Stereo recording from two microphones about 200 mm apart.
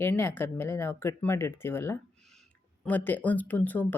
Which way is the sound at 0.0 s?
10° left (ahead or behind).